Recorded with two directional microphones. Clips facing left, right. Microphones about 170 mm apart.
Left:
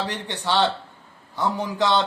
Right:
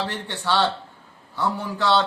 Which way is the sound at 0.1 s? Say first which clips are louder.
Even; 15° left (ahead or behind).